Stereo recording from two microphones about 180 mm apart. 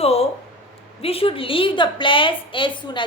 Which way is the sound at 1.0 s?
30° left (ahead or behind).